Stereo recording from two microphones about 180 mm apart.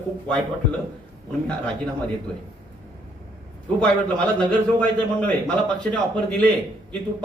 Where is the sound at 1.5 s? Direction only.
5° left (ahead or behind).